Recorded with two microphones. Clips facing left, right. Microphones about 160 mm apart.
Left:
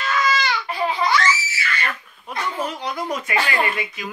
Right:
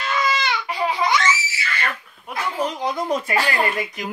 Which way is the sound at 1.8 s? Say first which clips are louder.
Right 1 dB; 5° right (ahead or behind).